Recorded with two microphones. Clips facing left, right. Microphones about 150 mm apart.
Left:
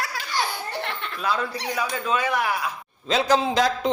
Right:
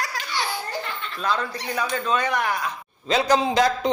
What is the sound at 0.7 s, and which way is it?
Laughter, 70° left (ahead or behind).